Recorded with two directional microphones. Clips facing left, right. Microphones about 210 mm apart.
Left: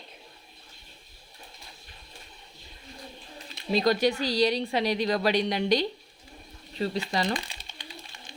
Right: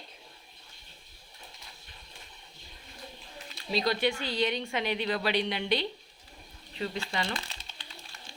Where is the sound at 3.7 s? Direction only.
45° left (ahead or behind).